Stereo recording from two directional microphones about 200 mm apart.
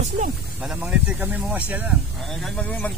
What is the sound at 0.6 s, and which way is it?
Speech, 5° right (ahead or behind).